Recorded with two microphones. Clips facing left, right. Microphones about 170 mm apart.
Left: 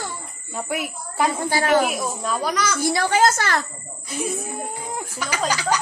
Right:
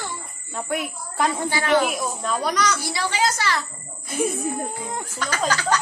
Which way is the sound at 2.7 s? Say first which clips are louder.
Left 6 dB; 50° left (ahead or behind).